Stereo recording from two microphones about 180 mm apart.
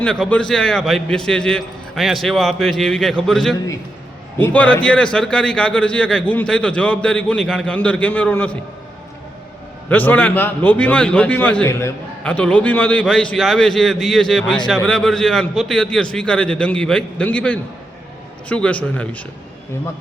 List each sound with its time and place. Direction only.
0.0 s a man's voice: 5° left (ahead or behind)
9.9 s a man's voice: 10° left (ahead or behind)